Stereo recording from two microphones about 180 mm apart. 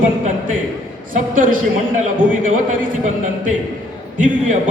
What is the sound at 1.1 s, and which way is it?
Speech, 50° right (ahead or behind).